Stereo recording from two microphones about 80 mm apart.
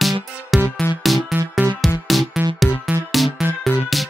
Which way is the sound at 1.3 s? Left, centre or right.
Centre.